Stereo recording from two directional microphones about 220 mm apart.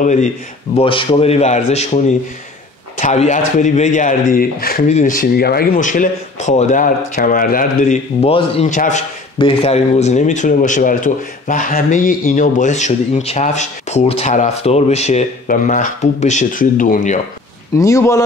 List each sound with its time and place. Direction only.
0.0 s speech: 35° left (ahead or behind)
17.7 s speech: 15° left (ahead or behind)